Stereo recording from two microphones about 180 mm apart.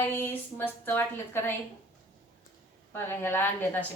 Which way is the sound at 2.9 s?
15° left (ahead or behind).